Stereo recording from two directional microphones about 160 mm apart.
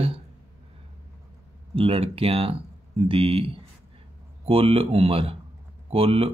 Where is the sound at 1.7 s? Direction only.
35° right (ahead or behind).